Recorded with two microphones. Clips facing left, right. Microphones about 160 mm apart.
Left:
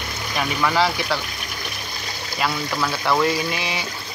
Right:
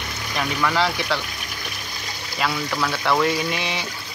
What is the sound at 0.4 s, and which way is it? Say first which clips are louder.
Speech: left 1 dB; 5° left (ahead or behind).